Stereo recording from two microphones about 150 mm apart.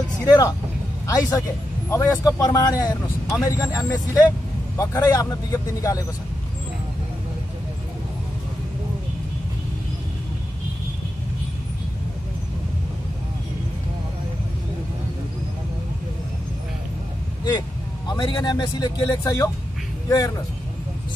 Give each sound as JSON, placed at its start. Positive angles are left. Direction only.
{"t": 0.2, "sound": "a man's voice", "side_deg": 20}
{"t": 17.5, "sound": "speech", "side_deg": 30}